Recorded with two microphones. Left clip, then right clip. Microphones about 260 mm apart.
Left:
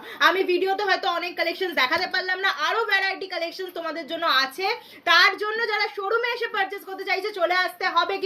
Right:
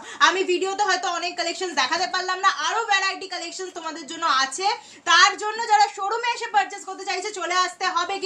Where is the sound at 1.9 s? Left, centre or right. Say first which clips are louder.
Even; right.